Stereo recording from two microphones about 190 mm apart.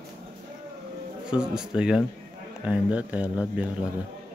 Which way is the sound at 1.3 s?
5° right (ahead or behind).